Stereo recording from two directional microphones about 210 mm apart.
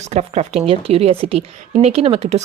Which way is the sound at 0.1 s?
30° right (ahead or behind).